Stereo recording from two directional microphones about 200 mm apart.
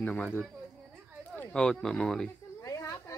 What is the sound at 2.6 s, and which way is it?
Snake, 15° left (ahead or behind).